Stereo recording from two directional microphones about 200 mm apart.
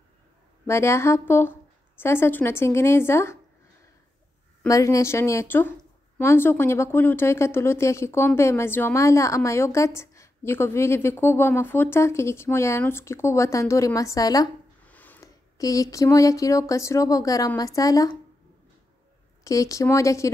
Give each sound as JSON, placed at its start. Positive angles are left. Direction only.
{"t": 0.7, "sound": "a woman's voice", "side_deg": 15}
{"t": 4.6, "sound": "a woman's voice", "side_deg": 15}
{"t": 19.4, "sound": "a woman's voice", "side_deg": 15}